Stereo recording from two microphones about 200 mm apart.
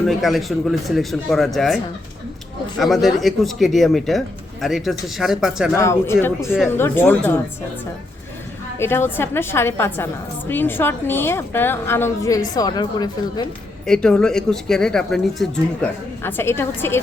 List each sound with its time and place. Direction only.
0.0 s speech: centre (ahead or behind)
5.7 s a woman's voice: 15° left (ahead or behind)
8.8 s a woman's voice: 10° left (ahead or behind)
13.8 s speech: 5° left (ahead or behind)